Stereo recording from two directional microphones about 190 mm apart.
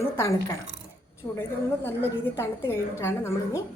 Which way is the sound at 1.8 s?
10° left (ahead or behind).